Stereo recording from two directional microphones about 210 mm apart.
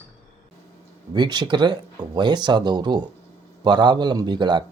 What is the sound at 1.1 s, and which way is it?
A man's voice, 20° right (ahead or behind).